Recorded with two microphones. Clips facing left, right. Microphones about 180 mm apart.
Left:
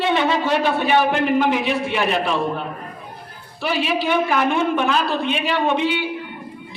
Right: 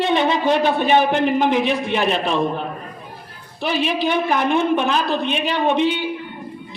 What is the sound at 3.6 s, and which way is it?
A man's voice, 20° right (ahead or behind).